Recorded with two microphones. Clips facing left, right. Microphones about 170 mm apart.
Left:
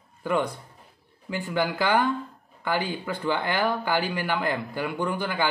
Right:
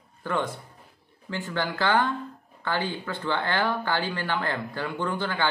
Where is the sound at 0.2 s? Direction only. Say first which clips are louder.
Left 3 dB; 10° left (ahead or behind).